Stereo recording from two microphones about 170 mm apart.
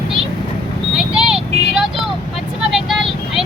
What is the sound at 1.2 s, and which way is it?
Vehicle, 5° right (ahead or behind).